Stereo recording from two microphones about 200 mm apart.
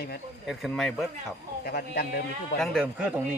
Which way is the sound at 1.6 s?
50° left (ahead or behind).